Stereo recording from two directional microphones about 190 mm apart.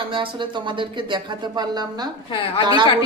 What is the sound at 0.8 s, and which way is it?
Speech, 25° right (ahead or behind).